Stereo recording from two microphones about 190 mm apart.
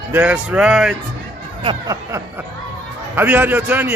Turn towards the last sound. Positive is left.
turn(degrees=-10)  # may be behind; listen again after turning